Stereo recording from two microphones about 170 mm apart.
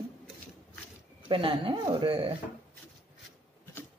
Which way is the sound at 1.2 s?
30° right (ahead or behind).